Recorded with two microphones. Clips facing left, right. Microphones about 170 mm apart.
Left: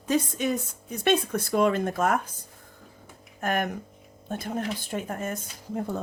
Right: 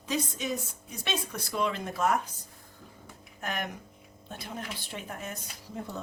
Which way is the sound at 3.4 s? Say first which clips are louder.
Left 8 dB; 50° left (ahead or behind).